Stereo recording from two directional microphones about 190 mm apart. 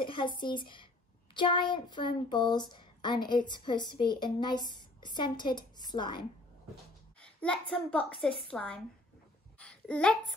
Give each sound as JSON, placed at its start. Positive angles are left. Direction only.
{"t": 0.0, "sound": "speech", "side_deg": 25}
{"t": 7.2, "sound": "a sound", "side_deg": 5}
{"t": 7.9, "sound": "a woman's voice", "side_deg": 5}
{"t": 9.6, "sound": "babbling", "side_deg": 5}